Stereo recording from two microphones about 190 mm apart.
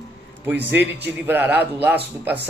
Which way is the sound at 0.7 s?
60° right (ahead or behind).